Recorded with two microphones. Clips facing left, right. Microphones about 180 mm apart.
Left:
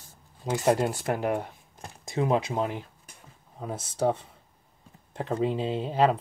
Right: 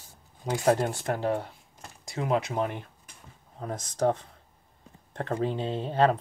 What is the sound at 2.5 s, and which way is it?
Speech, 10° left (ahead or behind).